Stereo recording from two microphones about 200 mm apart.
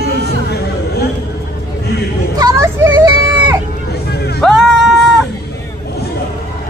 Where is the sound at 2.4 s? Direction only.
15° right (ahead or behind).